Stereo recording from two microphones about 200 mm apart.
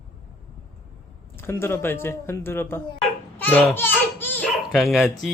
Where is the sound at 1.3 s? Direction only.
10° left (ahead or behind).